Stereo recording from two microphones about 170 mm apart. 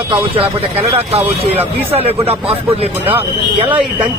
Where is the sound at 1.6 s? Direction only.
35° right (ahead or behind).